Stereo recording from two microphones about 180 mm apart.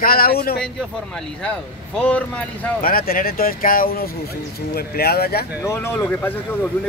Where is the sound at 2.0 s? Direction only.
5° left (ahead or behind).